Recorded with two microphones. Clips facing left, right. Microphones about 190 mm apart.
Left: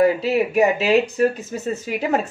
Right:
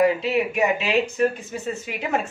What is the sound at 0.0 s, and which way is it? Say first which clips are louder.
Speech: left 2 dB; 35° left (ahead or behind).